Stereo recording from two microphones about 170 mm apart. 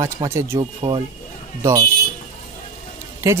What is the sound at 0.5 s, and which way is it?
Speech, 25° right (ahead or behind).